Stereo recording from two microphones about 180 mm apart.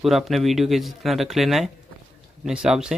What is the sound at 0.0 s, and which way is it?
Speech, centre (ahead or behind).